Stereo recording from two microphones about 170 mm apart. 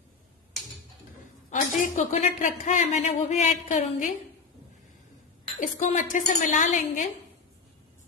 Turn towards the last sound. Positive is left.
turn(degrees=50)  # may be behind; listen again after turning